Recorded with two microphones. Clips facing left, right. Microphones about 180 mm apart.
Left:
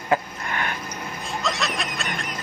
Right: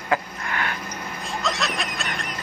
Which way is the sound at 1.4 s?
Centre (ahead or behind).